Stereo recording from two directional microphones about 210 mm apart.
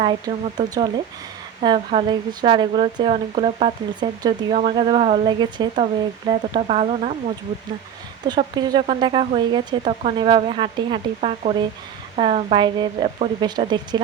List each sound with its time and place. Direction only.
0.0 s speech: 20° right (ahead or behind)
8.3 s speech: 20° right (ahead or behind)